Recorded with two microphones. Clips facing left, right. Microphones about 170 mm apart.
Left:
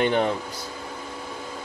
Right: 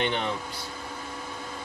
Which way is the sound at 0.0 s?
45° left (ahead or behind).